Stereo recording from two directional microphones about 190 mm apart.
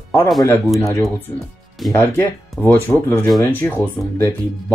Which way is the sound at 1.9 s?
15° left (ahead or behind).